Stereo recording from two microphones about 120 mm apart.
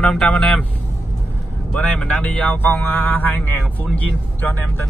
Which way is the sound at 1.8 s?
10° left (ahead or behind).